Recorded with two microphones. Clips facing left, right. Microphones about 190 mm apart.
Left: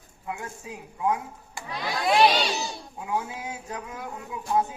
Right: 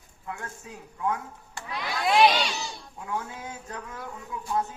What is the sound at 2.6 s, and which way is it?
A child's voice, 15° left (ahead or behind).